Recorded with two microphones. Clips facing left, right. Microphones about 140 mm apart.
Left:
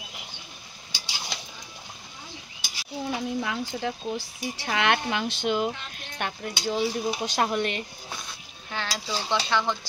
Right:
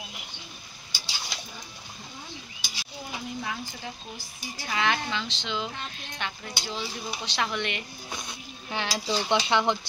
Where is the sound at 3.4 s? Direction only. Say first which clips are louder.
Left 6 dB; 70° left (ahead or behind); by 7.8 s 40° left (ahead or behind).